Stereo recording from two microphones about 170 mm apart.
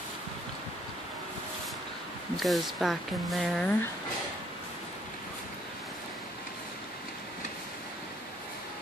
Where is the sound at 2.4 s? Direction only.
Centre (ahead or behind).